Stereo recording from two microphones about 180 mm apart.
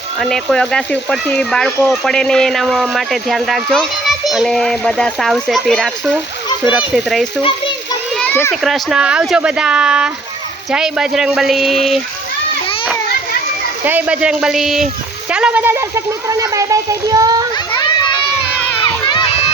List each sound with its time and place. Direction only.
0.2 s speech: 5° left (ahead or behind)
8.2 s children playing: 10° left (ahead or behind)
8.6 s speech: centre (ahead or behind)
13.8 s speech: 10° right (ahead or behind)
17.7 s a sound: 25° left (ahead or behind)
18.8 s crowd: 25° left (ahead or behind)